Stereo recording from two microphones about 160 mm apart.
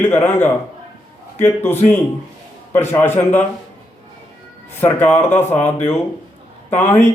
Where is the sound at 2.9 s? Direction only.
15° left (ahead or behind).